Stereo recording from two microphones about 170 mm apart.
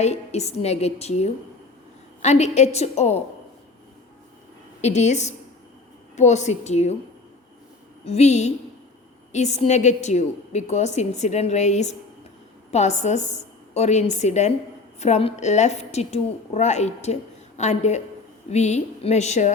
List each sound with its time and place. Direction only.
0.0 s a woman's voice: 40° left (ahead or behind)
4.8 s a woman's voice: 45° left (ahead or behind)
8.0 s a woman's voice: 40° left (ahead or behind)